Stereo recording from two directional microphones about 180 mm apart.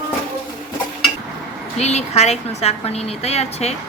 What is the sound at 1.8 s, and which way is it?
A woman's voice, 40° left (ahead or behind).